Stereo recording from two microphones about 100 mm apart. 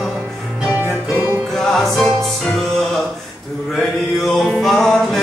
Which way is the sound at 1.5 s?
5° left (ahead or behind).